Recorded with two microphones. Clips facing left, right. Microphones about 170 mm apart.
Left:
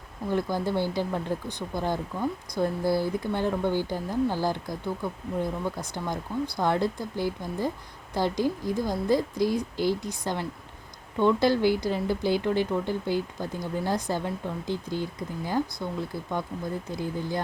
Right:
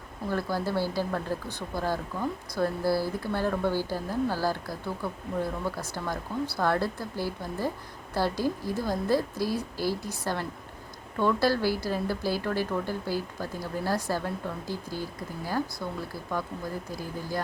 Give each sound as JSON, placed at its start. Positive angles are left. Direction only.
{"t": 0.3, "sound": "speech", "side_deg": 20}